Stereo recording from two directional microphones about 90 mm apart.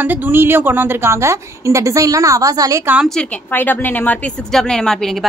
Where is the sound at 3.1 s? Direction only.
10° left (ahead or behind).